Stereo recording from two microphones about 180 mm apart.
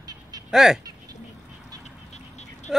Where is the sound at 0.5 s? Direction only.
5° right (ahead or behind).